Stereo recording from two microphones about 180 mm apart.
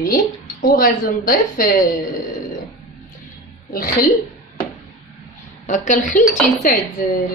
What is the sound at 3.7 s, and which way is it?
Speech, 55° left (ahead or behind).